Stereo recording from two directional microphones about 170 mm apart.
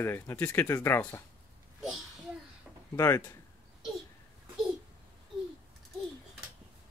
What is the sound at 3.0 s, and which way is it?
Speech, 15° left (ahead or behind).